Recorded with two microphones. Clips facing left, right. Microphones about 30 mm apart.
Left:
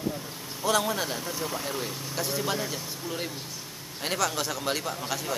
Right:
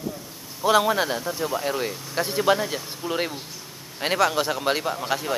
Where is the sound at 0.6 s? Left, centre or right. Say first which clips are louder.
Right 7 dB; right.